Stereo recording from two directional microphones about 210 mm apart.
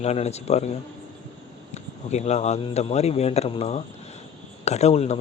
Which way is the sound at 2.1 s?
30° left (ahead or behind).